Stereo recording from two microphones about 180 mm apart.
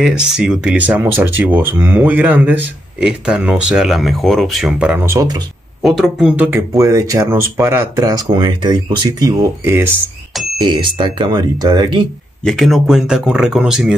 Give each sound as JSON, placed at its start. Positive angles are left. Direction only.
{"t": 0.0, "sound": "speech", "side_deg": -5}
{"t": 5.8, "sound": "speech", "side_deg": -5}
{"t": 10.6, "sound": "speech", "side_deg": -25}
{"t": 12.4, "sound": "speech", "side_deg": 0}